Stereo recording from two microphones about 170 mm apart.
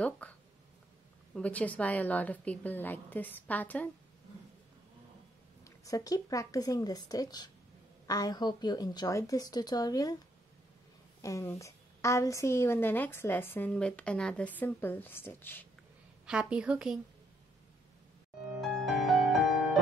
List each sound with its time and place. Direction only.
1.3 s a woman's voice: 10° left (ahead or behind)
5.6 s speech: 20° left (ahead or behind)
11.1 s a woman's voice: 20° left (ahead or behind)
16.3 s a woman's voice: 5° right (ahead or behind)
18.6 s music: centre (ahead or behind)